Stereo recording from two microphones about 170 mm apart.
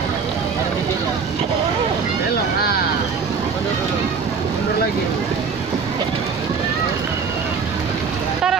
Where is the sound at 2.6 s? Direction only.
65° left (ahead or behind).